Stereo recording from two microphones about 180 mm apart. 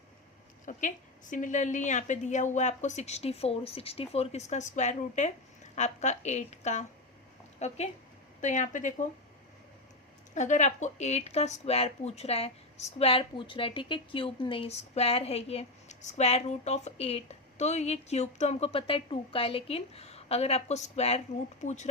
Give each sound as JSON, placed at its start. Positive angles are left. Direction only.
{"t": 0.6, "sound": "a woman's voice", "side_deg": 45}
{"t": 10.3, "sound": "speech", "side_deg": 40}